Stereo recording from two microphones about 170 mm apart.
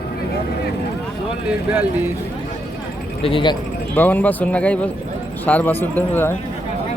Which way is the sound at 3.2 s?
30° left (ahead or behind).